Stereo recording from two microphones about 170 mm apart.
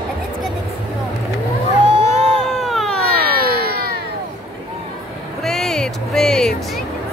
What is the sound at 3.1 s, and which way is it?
Baby cry, 65° right (ahead or behind).